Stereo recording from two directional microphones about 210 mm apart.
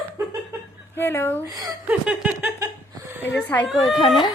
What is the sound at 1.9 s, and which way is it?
Laughter, 5° right (ahead or behind).